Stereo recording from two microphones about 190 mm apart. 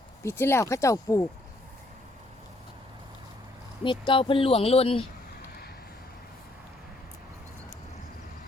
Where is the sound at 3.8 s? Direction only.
25° left (ahead or behind).